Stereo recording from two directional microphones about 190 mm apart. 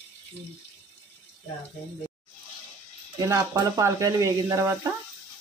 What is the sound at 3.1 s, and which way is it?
Speech, 15° right (ahead or behind).